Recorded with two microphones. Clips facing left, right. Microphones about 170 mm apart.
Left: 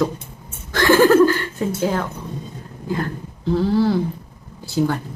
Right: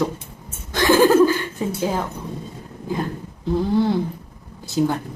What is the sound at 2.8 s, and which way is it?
Speech, 15° right (ahead or behind).